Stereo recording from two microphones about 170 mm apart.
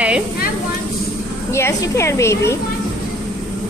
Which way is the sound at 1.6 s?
15° left (ahead or behind).